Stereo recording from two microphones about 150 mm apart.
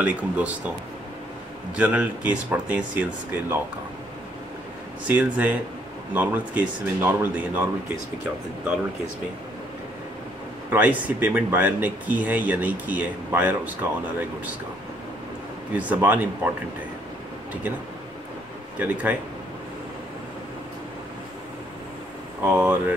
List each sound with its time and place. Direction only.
0.0 s speech: 10° right (ahead or behind)
1.8 s speech: 10° right (ahead or behind)
5.0 s speech: 10° right (ahead or behind)
10.7 s speech: 10° right (ahead or behind)
15.7 s speech: 10° right (ahead or behind)
18.8 s speech: 15° right (ahead or behind)
22.4 s speech: 15° right (ahead or behind)